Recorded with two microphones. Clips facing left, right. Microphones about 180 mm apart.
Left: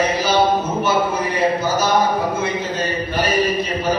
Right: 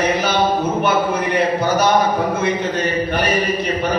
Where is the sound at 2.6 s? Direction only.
60° right (ahead or behind).